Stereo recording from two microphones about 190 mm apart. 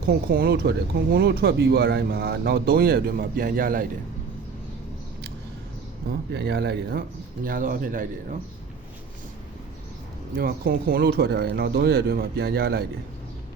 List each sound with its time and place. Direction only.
0.0 s speech: 55° right (ahead or behind)
6.1 s speech: 60° right (ahead or behind)
7.4 s speech: 45° right (ahead or behind)
10.3 s speech: 50° right (ahead or behind)